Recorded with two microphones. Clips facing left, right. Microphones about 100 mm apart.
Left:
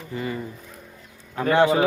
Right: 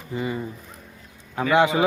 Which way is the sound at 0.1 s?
20° right (ahead or behind).